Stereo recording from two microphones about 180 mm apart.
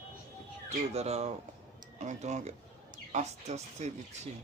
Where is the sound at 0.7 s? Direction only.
35° right (ahead or behind).